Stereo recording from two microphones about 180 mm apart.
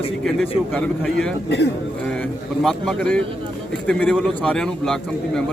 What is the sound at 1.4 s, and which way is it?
Speech, 70° left (ahead or behind).